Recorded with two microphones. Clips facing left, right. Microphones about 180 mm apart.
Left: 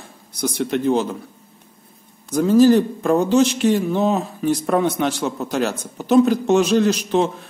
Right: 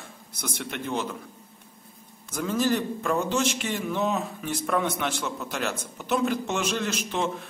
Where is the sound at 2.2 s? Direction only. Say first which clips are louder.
Left 13 dB; 35° left (ahead or behind).